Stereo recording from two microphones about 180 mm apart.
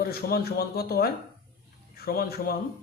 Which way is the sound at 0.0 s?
60° left (ahead or behind).